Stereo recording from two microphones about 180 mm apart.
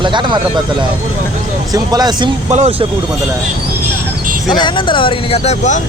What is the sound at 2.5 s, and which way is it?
Speech, 35° right (ahead or behind).